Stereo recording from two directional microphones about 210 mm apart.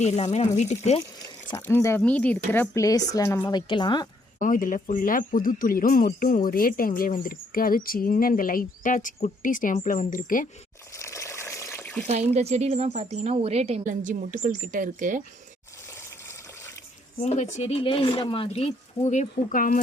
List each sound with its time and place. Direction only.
0.0 s speech: 30° left (ahead or behind)
1.5 s speech: 10° left (ahead or behind)
3.7 s speech: 20° left (ahead or behind)
4.4 s speech: 40° left (ahead or behind)
10.9 s water: 15° left (ahead or behind)
12.0 s speech: 30° right (ahead or behind)
17.2 s speech: 35° left (ahead or behind)